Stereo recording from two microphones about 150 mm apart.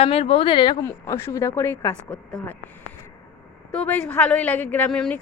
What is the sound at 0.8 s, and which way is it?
A woman's voice, 20° left (ahead or behind).